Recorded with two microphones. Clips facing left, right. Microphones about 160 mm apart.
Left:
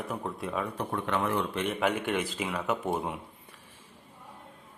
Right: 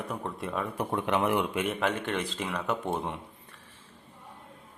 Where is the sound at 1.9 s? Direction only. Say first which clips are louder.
Left 1 dB; 10° left (ahead or behind).